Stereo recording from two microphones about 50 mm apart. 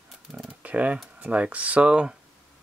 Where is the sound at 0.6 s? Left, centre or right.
Right.